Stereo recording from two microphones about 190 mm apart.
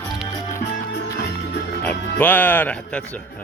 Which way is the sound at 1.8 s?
10° left (ahead or behind).